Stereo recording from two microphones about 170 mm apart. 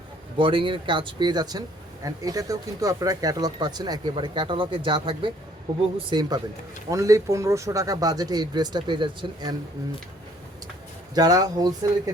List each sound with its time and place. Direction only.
0.3 s speech: 30° right (ahead or behind)
11.1 s speech: 25° right (ahead or behind)